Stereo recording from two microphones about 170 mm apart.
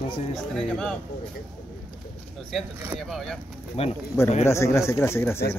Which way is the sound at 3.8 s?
35° left (ahead or behind).